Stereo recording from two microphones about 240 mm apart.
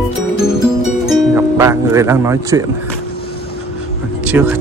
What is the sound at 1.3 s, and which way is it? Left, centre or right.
Speech, centre.